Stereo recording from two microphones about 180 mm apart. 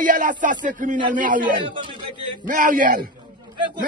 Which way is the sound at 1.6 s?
30° right (ahead or behind).